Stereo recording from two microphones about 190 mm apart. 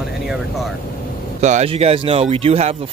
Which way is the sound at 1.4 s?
35° right (ahead or behind).